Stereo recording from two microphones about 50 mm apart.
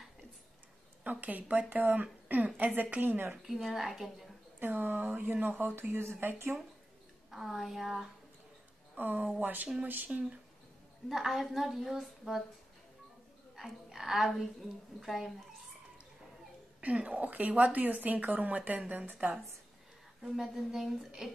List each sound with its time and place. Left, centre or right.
1.0 s a woman's voice: right
3.3 s a woman's voice: centre
4.6 s a woman's voice: right
5.8 s speech: right
7.2 s a woman's voice: centre
8.9 s a woman's voice: right
10.1 s speech: right
11.1 s a woman's voice: centre
13.6 s a woman's voice: centre
16.8 s a woman's voice: right
20.2 s a woman's voice: centre